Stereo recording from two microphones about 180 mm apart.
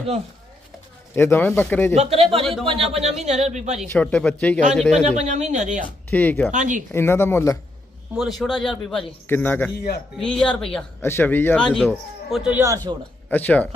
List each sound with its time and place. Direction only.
1.1 s speech: 10° left (ahead or behind)
2.0 s speech: 35° right (ahead or behind)
2.4 s speech: centre (ahead or behind)
2.9 s speech: 35° right (ahead or behind)
3.8 s speech: 5° left (ahead or behind)
5.0 s speech: 40° right (ahead or behind)
6.1 s speech: 10° left (ahead or behind)
6.5 s speech: 45° right (ahead or behind)
6.9 s speech: 15° left (ahead or behind)
8.1 s speech: centre (ahead or behind)
11.0 s speech: 10° left (ahead or behind); by 13.0 s 20° right (ahead or behind)
13.3 s speech: 10° left (ahead or behind)